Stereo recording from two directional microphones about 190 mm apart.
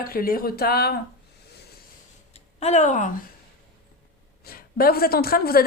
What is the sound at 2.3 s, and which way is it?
Speech, 35° left (ahead or behind).